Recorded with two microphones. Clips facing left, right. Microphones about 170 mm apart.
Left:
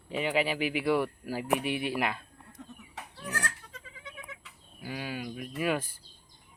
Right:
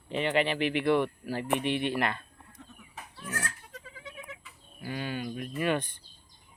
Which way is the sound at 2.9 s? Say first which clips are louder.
Even; 65° left (ahead or behind).